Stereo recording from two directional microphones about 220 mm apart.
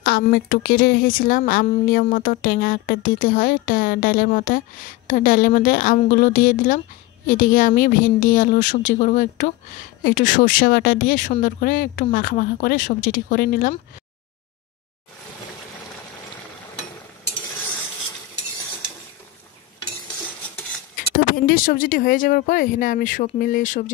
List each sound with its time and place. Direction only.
0.2 s speech: 40° left (ahead or behind)
21.1 s speech: 40° left (ahead or behind)